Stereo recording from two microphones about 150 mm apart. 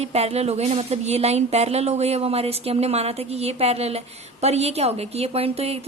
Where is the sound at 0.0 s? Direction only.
45° right (ahead or behind).